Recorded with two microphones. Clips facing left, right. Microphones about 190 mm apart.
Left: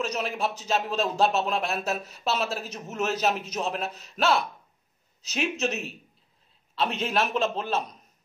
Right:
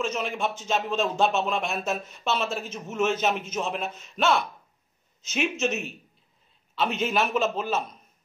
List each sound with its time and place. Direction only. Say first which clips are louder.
0.2 s a man's voice: even; 5° left (ahead or behind)